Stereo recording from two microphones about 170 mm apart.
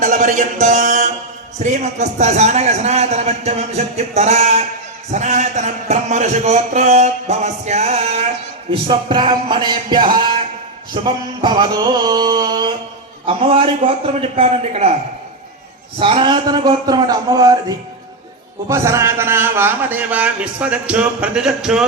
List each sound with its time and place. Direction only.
0.0 s music: 50° right (ahead or behind)
1.5 s a man's voice: 45° right (ahead or behind)
8.7 s music: 30° right (ahead or behind)
13.2 s a man's voice: 30° right (ahead or behind)
16.0 s music: 30° right (ahead or behind)
18.7 s a man's voice: 15° right (ahead or behind)